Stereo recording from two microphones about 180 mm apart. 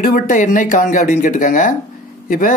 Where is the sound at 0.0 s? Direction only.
50° left (ahead or behind).